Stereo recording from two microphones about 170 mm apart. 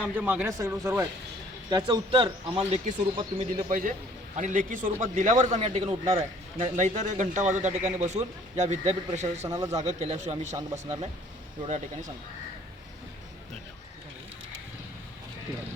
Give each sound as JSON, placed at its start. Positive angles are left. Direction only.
{"t": 0.2, "sound": "speech", "side_deg": -10}
{"t": 1.7, "sound": "speech", "side_deg": -30}
{"t": 3.7, "sound": "a man's voice", "side_deg": -50}
{"t": 9.4, "sound": "speech", "side_deg": -20}
{"t": 9.7, "sound": "speech", "side_deg": -40}
{"t": 10.6, "sound": "speech", "side_deg": -25}